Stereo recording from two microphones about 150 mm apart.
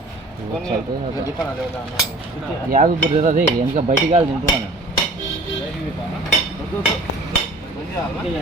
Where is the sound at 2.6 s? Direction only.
65° right (ahead or behind).